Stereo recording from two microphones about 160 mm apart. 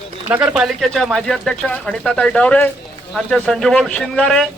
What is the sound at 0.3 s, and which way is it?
Speech, 10° right (ahead or behind).